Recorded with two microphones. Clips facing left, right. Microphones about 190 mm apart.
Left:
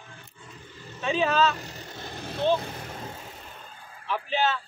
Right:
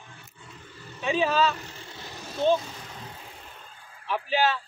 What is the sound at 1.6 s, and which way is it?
Vehicle, 40° left (ahead or behind).